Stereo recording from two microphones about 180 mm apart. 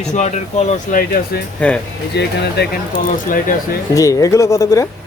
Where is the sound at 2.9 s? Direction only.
50° left (ahead or behind).